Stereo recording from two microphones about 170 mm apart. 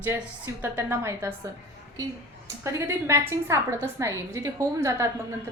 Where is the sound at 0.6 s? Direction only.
15° right (ahead or behind).